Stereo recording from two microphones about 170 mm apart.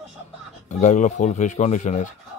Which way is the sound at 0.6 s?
45° left (ahead or behind).